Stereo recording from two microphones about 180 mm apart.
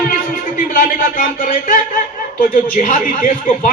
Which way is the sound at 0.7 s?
50° left (ahead or behind).